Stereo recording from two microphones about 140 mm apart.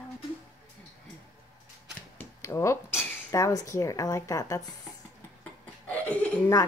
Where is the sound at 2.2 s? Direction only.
20° left (ahead or behind).